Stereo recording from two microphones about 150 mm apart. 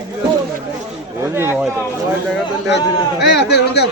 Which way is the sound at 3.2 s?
90° left.